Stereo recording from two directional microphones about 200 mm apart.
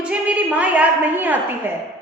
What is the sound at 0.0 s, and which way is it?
A woman's voice, 5° right (ahead or behind).